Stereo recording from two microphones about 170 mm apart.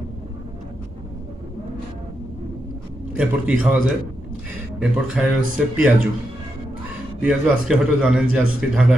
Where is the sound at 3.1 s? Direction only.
5° right (ahead or behind).